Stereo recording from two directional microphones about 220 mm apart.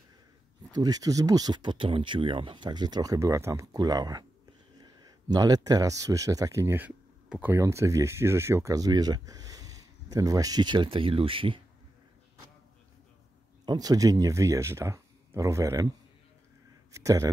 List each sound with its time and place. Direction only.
0.7 s speech: 15° right (ahead or behind)
13.7 s speech: 15° right (ahead or behind)
16.9 s speech: 15° right (ahead or behind)